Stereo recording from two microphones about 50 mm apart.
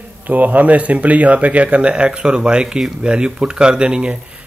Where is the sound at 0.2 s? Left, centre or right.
Right.